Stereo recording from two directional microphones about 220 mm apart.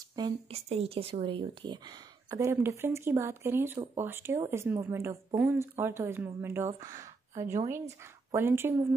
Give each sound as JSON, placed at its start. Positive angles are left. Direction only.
{"t": 0.1, "sound": "speech", "side_deg": -25}